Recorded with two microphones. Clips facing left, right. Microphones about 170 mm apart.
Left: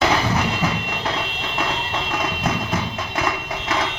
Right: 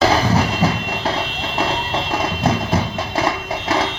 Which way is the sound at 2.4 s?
35° right (ahead or behind).